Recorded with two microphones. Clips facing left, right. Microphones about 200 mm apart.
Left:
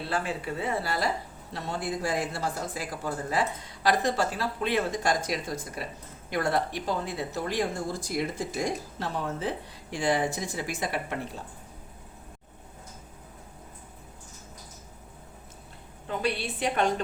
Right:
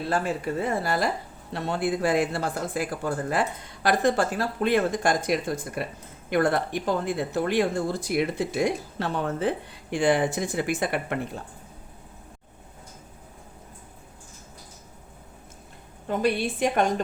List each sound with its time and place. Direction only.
0.1 s speech: 45° right (ahead or behind)
16.0 s speech: 45° right (ahead or behind)